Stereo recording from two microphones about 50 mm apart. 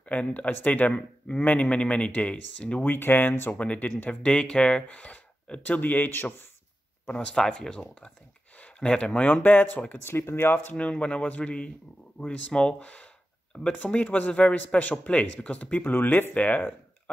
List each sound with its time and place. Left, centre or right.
0.0 s speech: left
2.8 s speech: left
3.5 s speech: left
7.3 s speech: centre
9.3 s speech: left
10.0 s speech: left
10.5 s speech: left
10.8 s speech: left
16.3 s speech: left